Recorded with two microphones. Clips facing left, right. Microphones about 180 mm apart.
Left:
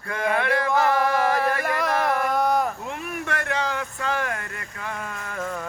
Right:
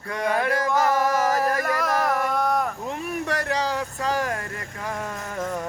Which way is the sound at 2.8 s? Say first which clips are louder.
Right 3 dB; 35° right (ahead or behind).